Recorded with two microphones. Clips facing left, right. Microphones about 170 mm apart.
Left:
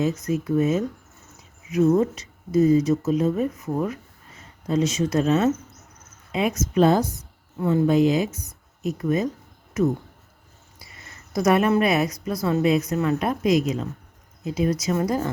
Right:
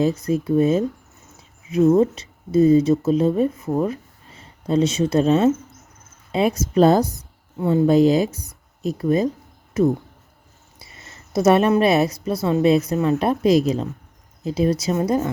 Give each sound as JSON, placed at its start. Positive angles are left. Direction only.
{"t": 0.0, "sound": "speech", "side_deg": -30}
{"t": 7.6, "sound": "speech", "side_deg": -25}
{"t": 7.9, "sound": "a woman's voice", "side_deg": -35}